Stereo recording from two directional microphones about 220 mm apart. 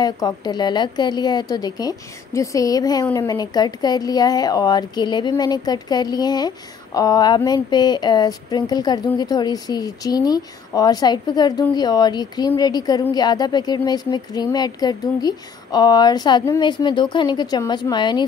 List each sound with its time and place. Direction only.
0.0 s a woman's voice: 20° left (ahead or behind)